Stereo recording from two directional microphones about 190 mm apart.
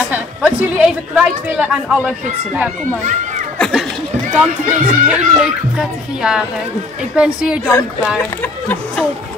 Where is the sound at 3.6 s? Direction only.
Centre (ahead or behind).